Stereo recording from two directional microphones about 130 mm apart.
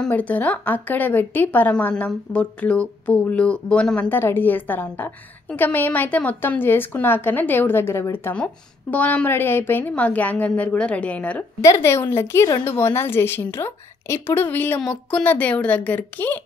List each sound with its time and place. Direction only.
0.0 s speech: 10° left (ahead or behind)
11.6 s a woman's voice: 20° left (ahead or behind)